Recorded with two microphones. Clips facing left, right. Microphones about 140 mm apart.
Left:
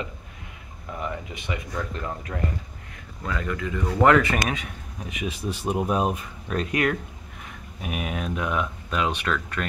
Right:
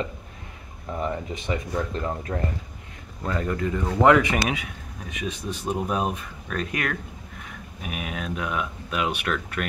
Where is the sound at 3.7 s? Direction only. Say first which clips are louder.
Even; 15° right (ahead or behind).